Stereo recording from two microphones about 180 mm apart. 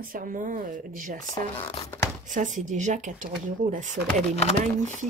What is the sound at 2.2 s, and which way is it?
Speech, 45° right (ahead or behind).